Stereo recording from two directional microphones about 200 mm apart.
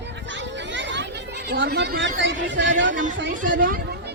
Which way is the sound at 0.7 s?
65° right (ahead or behind).